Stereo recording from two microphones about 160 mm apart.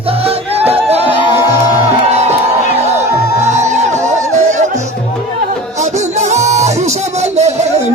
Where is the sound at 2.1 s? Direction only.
40° right (ahead or behind).